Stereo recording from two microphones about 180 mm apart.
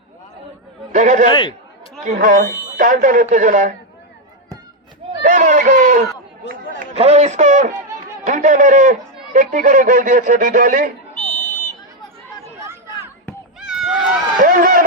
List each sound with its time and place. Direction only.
0.9 s speech: 45° right (ahead or behind)
1.3 s speech: 25° left (ahead or behind)
2.0 s speech: 45° right (ahead or behind)
5.2 s a sound: 45° right (ahead or behind)
6.9 s a man's voice: 35° right (ahead or behind)
13.6 s run: centre (ahead or behind)
14.3 s run: 50° right (ahead or behind)